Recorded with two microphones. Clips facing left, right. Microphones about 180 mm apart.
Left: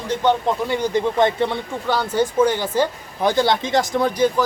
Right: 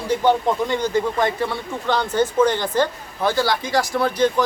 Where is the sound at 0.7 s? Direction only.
15° left (ahead or behind).